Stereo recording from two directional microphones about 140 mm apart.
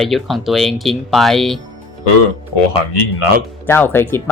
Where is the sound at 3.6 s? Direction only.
15° left (ahead or behind).